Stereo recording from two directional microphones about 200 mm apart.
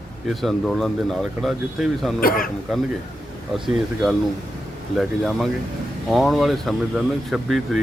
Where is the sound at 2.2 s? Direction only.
45° left (ahead or behind).